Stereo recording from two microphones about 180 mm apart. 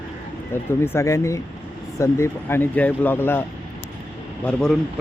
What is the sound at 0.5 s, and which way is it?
Speech, 15° left (ahead or behind).